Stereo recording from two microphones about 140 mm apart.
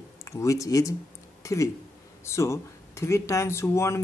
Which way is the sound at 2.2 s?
20° left (ahead or behind).